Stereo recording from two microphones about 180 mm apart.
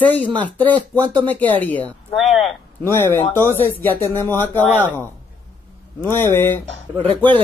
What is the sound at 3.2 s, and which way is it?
Speech, 35° left (ahead or behind).